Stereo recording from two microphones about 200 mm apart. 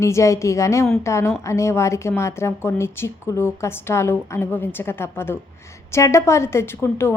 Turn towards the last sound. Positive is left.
turn(degrees=10)  # may be behind; listen again after turning